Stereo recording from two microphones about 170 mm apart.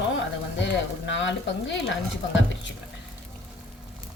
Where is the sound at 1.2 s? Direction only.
90° left.